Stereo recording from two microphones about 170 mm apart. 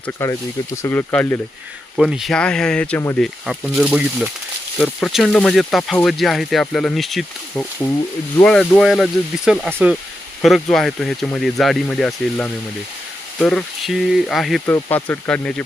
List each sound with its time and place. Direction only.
0.0 s speech: 15° left (ahead or behind)
2.0 s speech: centre (ahead or behind)
9.6 s speech: 10° right (ahead or behind)
10.4 s speech: centre (ahead or behind)
14.7 s speech: 10° left (ahead or behind)